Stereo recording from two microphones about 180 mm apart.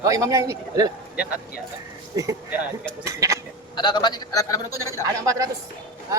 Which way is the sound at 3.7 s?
25° left (ahead or behind).